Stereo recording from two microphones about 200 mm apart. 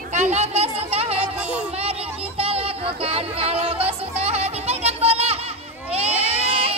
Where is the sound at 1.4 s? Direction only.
5° right (ahead or behind).